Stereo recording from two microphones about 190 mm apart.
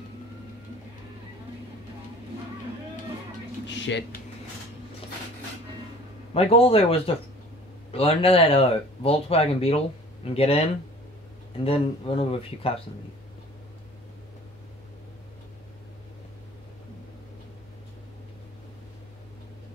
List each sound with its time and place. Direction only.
3.6 s a sound: 70° left (ahead or behind)
6.3 s speech: 30° left (ahead or behind)
11.6 s speech: 30° left (ahead or behind)